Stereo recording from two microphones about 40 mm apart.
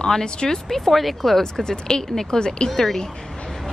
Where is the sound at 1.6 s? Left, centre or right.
Centre.